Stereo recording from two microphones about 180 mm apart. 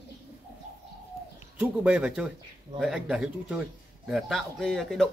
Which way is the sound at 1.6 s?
5° right (ahead or behind).